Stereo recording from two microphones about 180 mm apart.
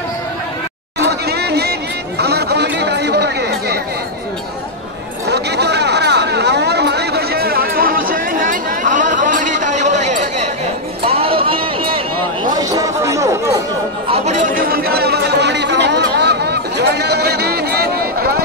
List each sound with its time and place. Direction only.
0.9 s chatter: 65° right (ahead or behind)
5.3 s a sound: 65° right (ahead or behind); by 10.5 s 40° right (ahead or behind)
11.1 s run: 30° right (ahead or behind)
12.5 s chatter: 20° right (ahead or behind)
14.0 s chatter: 35° right (ahead or behind); by 18.4 s 60° right (ahead or behind)